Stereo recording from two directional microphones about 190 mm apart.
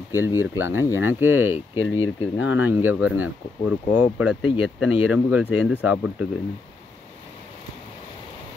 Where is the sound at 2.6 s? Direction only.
10° right (ahead or behind).